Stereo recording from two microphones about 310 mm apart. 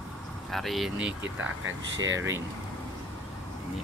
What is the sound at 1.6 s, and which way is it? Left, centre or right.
Speech, right.